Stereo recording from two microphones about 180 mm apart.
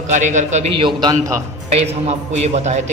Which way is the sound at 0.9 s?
25° right (ahead or behind).